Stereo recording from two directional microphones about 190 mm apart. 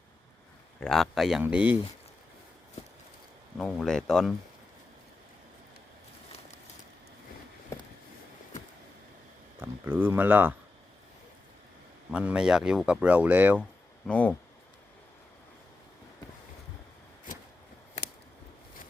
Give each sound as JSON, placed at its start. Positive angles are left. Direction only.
{"t": 0.8, "sound": "speech", "side_deg": 0}
{"t": 3.6, "sound": "speech", "side_deg": 5}
{"t": 9.6, "sound": "speech", "side_deg": -10}
{"t": 12.1, "sound": "speech", "side_deg": -5}
{"t": 14.1, "sound": "speech", "side_deg": 5}